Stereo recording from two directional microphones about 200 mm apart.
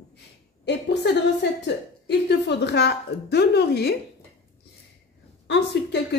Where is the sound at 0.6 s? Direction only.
60° left (ahead or behind).